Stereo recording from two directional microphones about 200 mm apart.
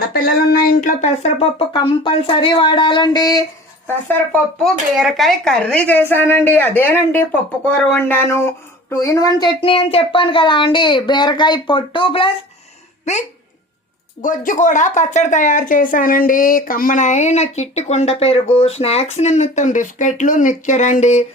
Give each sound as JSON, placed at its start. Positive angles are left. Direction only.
{"t": 0.1, "sound": "speech", "side_deg": 50}
{"t": 3.8, "sound": "speech", "side_deg": 10}
{"t": 14.2, "sound": "speech", "side_deg": 40}